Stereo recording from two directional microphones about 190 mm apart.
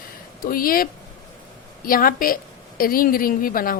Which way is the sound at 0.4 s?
50° left (ahead or behind).